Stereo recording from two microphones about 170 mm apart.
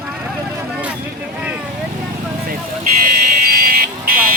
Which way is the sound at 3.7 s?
55° right (ahead or behind).